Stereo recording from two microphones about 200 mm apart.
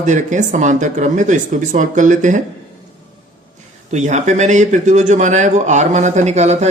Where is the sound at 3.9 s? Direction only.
35° right (ahead or behind).